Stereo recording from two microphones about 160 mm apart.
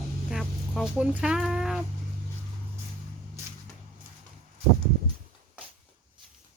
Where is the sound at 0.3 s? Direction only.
5° right (ahead or behind).